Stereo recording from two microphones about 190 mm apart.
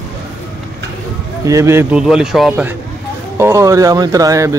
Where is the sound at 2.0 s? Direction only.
Centre (ahead or behind).